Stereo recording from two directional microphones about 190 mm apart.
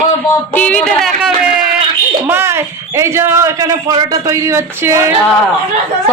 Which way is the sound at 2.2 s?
15° right (ahead or behind).